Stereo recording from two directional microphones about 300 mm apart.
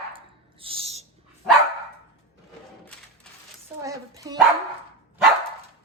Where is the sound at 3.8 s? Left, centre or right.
Centre.